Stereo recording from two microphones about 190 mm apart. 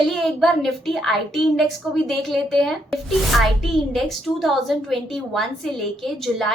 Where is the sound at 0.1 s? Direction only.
Centre (ahead or behind).